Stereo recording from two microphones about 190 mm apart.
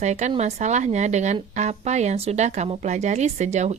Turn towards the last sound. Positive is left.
turn(degrees=-35)  # may be behind; listen again after turning